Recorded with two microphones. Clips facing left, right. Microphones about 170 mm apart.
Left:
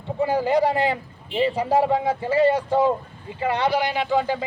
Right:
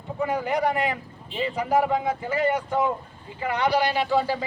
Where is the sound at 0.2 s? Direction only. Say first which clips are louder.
Left 5 dB; 30° left (ahead or behind).